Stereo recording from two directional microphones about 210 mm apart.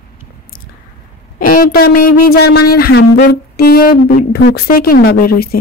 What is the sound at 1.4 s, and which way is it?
Speech, 40° left (ahead or behind).